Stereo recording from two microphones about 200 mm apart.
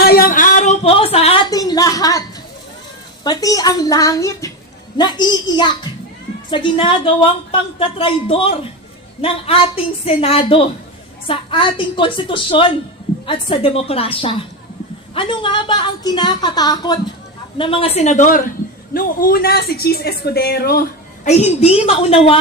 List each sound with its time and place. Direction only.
0.0 s a sound: 50° left (ahead or behind); by 2.2 s 15° left (ahead or behind)
3.2 s a woman's voice: 20° left (ahead or behind); by 20.8 s 50° left (ahead or behind)
21.2 s a woman's voice: 35° left (ahead or behind)